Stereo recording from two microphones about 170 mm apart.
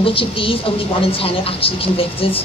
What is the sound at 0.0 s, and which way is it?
A woman's voice, 30° left (ahead or behind).